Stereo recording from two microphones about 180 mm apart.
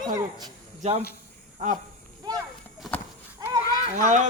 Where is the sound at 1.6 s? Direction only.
45° right (ahead or behind).